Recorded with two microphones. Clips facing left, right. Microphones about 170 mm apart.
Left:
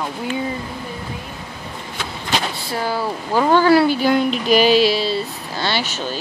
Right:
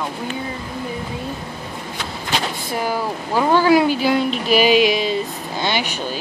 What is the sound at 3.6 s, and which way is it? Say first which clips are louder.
Speech: left 1 dB; 10° right (ahead or behind).